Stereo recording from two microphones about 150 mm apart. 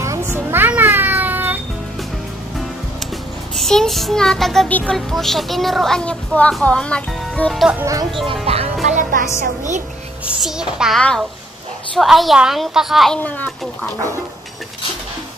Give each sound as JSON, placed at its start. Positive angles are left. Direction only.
{"t": 0.0, "sound": "a sound", "side_deg": -15}
{"t": 3.5, "sound": "a child's voice", "side_deg": 5}
{"t": 7.8, "sound": "speech", "side_deg": -20}
{"t": 8.3, "sound": "speech", "side_deg": -40}
{"t": 8.8, "sound": "speech", "side_deg": -55}
{"t": 10.2, "sound": "a child's voice", "side_deg": -5}
{"t": 13.2, "sound": "a child's voice", "side_deg": 10}